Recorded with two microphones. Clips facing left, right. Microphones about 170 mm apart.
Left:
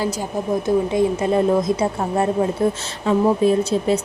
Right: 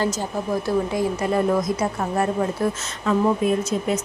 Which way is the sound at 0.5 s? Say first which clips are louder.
Left 4 dB; 20° left (ahead or behind).